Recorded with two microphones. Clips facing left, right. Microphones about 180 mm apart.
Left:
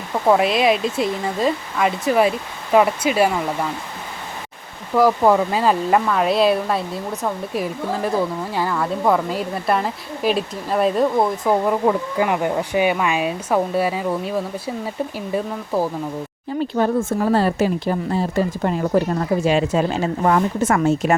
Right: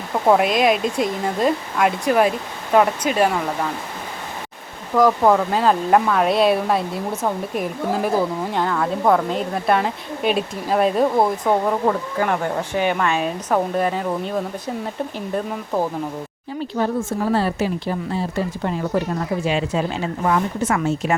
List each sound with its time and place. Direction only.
0.3 s speech: centre (ahead or behind)
4.9 s speech: 5° left (ahead or behind)
16.7 s a woman's voice: 55° left (ahead or behind)